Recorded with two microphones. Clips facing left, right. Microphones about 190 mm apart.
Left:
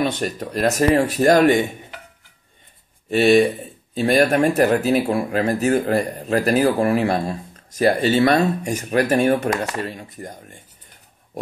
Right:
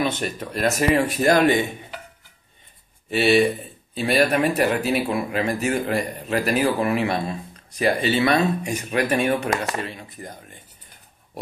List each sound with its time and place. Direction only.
0.2 s speech: 40° left (ahead or behind)
3.1 s speech: 45° left (ahead or behind)